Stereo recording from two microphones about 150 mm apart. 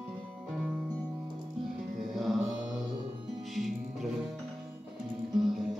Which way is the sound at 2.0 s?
Centre (ahead or behind).